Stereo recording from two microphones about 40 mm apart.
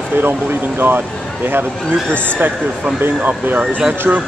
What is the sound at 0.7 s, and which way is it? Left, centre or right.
Speech, right.